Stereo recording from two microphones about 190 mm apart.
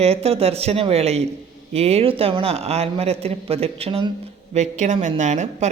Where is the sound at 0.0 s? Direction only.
30° right (ahead or behind).